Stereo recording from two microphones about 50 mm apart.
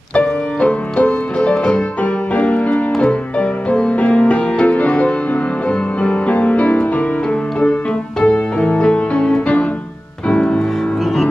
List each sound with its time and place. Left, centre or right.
0.1 s music: left
8.2 s music: left